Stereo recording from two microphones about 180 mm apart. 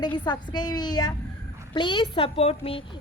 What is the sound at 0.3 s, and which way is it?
Speech, 25° left (ahead or behind).